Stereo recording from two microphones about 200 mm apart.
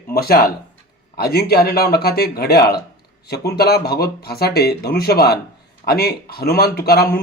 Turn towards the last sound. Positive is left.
turn(degrees=50)  # may be behind; listen again after turning